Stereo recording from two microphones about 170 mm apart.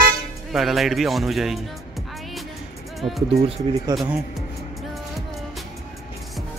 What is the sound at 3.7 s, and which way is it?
Speech, 30° right (ahead or behind).